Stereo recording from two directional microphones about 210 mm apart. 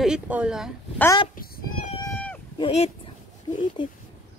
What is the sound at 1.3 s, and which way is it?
Cat, 40° left (ahead or behind).